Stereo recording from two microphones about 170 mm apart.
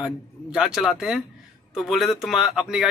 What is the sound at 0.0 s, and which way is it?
A man's voice, 5° right (ahead or behind).